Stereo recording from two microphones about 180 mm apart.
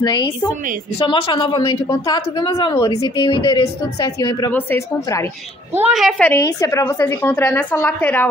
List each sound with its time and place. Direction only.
0.0 s speech: 25° left (ahead or behind)
4.5 s a woman's voice: 10° left (ahead or behind)
5.7 s a woman's voice: 10° right (ahead or behind)
6.3 s a woman's voice: 15° left (ahead or behind)